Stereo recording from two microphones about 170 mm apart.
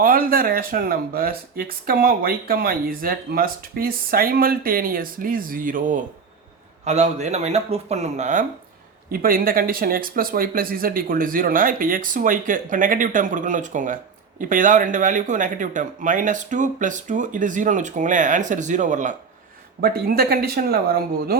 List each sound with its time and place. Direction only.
0.0 s speech: 60° right (ahead or behind)
6.8 s speech: 40° right (ahead or behind)
9.1 s speech: 55° right (ahead or behind)
19.8 s speech: 65° right (ahead or behind)